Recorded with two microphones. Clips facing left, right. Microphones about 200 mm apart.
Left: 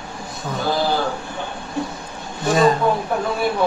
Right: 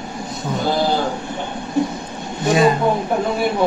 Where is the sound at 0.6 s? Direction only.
20° right (ahead or behind).